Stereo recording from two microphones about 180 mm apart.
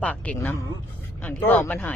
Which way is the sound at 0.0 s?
5° left (ahead or behind).